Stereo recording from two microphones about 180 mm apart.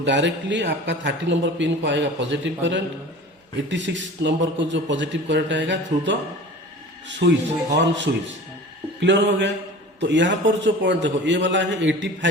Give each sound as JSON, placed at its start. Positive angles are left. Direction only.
{"t": 0.0, "sound": "a man's voice", "side_deg": -80}
{"t": 7.2, "sound": "a man's voice", "side_deg": -75}